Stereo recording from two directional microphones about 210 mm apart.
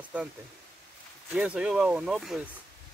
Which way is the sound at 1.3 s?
5° right (ahead or behind).